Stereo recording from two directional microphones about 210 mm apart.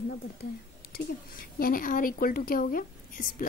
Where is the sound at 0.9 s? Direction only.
45° left (ahead or behind).